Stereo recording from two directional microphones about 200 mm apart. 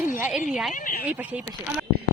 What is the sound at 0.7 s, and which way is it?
Speech, 45° left (ahead or behind).